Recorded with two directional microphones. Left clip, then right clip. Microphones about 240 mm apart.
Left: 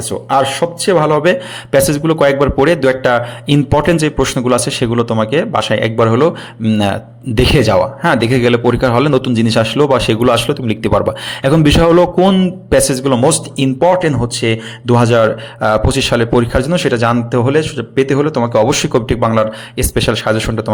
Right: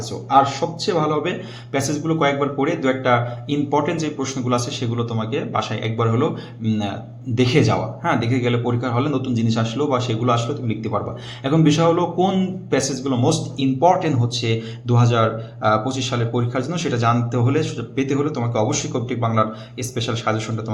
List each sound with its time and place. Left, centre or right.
0.3 s a man's voice: left